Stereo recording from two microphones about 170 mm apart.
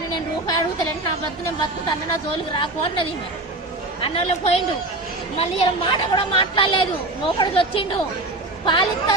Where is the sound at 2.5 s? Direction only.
30° left (ahead or behind).